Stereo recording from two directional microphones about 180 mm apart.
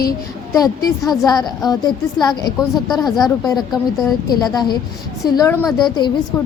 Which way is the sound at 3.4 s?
20° left (ahead or behind).